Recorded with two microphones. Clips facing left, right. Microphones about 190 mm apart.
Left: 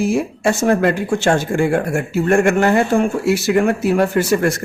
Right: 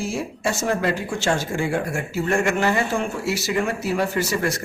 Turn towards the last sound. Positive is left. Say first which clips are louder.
# left 7 dB
turn(degrees=55)  # may be behind; listen again after turning